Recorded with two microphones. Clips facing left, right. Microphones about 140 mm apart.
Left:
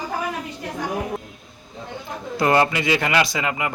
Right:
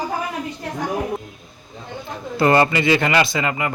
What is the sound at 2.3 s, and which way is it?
Speech, 5° left (ahead or behind).